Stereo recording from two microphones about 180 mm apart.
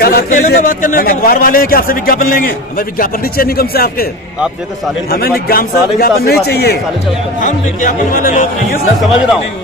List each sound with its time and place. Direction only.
0.0 s a man's voice: 55° left (ahead or behind)
5.1 s a man's voice: 55° left (ahead or behind)
7.4 s speech: 45° left (ahead or behind)